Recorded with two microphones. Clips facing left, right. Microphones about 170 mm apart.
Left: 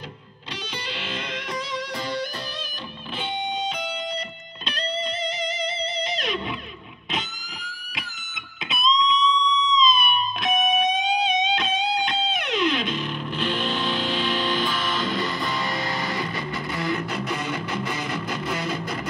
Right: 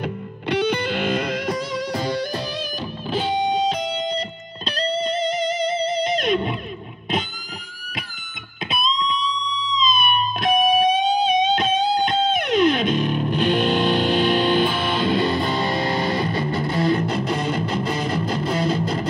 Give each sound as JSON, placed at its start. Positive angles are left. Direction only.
{"t": 0.5, "sound": "music", "side_deg": -60}
{"t": 3.1, "sound": "music", "side_deg": -35}
{"t": 8.9, "sound": "music", "side_deg": -35}
{"t": 12.9, "sound": "music", "side_deg": -50}
{"t": 14.7, "sound": "music", "side_deg": -30}